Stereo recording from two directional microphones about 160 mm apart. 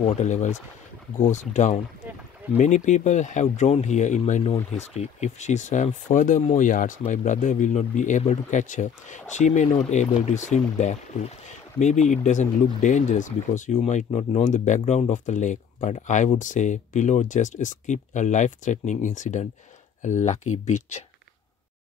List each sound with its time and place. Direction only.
0.0 s speech: 50° left (ahead or behind)